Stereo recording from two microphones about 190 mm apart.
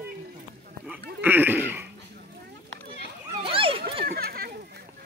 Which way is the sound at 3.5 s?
30° right (ahead or behind).